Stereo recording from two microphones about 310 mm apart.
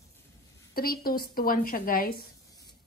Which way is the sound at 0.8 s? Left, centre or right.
Left.